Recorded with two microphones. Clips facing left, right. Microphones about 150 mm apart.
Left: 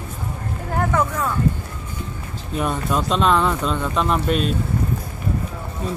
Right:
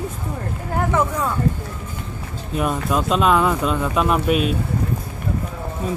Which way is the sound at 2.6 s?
5° right (ahead or behind).